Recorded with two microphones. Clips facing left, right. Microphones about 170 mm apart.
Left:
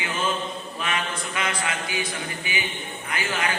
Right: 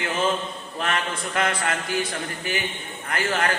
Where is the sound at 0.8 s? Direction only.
55° right (ahead or behind).